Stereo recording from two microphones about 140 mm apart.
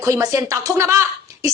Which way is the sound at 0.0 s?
25° right (ahead or behind).